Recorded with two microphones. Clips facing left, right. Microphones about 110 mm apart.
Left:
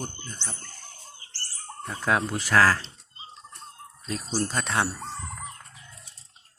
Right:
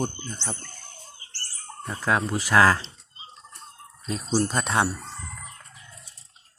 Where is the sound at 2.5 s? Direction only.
20° right (ahead or behind).